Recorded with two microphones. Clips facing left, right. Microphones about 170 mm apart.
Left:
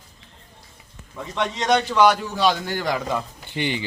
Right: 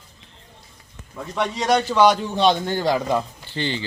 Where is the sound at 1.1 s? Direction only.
Centre (ahead or behind); by 3.2 s 20° right (ahead or behind).